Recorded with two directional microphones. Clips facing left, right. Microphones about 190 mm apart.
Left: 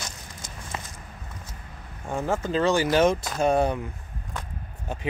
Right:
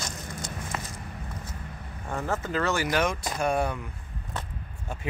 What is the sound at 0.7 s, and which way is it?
Walk, 25° left (ahead or behind).